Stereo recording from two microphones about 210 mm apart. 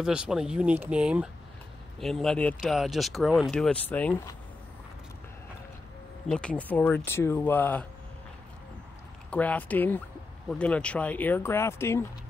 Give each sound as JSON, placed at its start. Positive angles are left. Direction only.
{"t": 0.0, "sound": "speech", "side_deg": -5}
{"t": 6.2, "sound": "speech", "side_deg": 5}
{"t": 9.3, "sound": "speech", "side_deg": 5}